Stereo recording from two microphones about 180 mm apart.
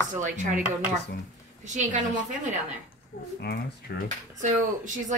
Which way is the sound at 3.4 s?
65° left (ahead or behind).